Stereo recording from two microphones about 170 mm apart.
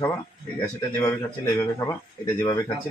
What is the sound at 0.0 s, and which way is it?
Speech, 15° left (ahead or behind).